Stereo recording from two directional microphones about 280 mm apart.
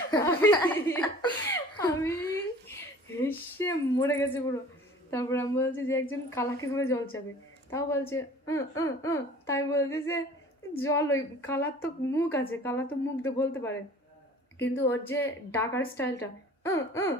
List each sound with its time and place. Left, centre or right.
0.1 s chuckle: centre
3.2 s a sound: centre
5.1 s speech: centre